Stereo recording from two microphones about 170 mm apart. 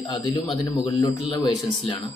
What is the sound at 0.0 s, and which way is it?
Speech, 20° left (ahead or behind).